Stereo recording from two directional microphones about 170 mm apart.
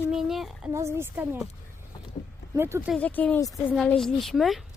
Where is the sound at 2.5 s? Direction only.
15° right (ahead or behind).